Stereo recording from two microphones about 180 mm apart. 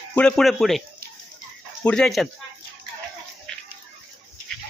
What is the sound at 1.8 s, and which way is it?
Speech, 5° left (ahead or behind).